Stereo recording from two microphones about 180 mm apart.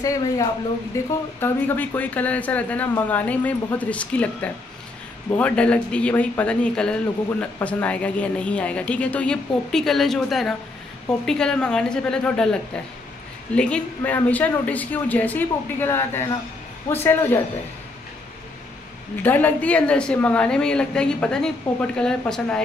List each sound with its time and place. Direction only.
0.0 s a woman's voice: 20° left (ahead or behind)
13.6 s speech: 5° left (ahead or behind)
19.2 s a woman's voice: 10° left (ahead or behind)